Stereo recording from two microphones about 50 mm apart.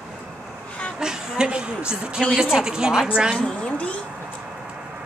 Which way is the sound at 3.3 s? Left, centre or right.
Left.